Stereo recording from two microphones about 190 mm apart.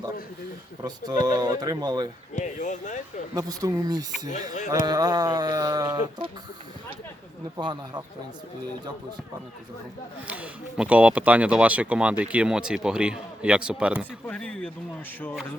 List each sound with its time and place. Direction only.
0.9 s speech: 20° right (ahead or behind)
2.3 s speech: 40° left (ahead or behind)
3.3 s speech: 20° right (ahead or behind)
7.5 s speech: 20° right (ahead or behind)
10.2 s speech: 5° right (ahead or behind)
14.3 s speech: 5° left (ahead or behind)